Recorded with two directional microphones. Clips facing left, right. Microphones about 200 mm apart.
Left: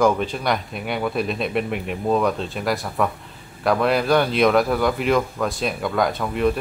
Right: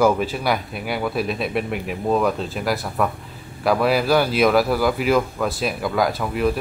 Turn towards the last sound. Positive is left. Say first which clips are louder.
# even
turn(degrees=-5)  # may be behind; listen again after turning